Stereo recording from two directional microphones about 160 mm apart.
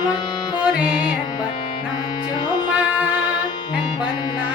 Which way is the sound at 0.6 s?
5° right (ahead or behind).